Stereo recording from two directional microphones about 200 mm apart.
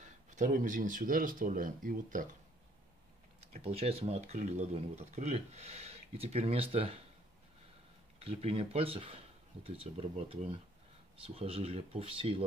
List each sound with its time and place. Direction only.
0.0 s speech: 40° right (ahead or behind)
3.5 s speech: 30° right (ahead or behind)
8.2 s speech: 30° right (ahead or behind)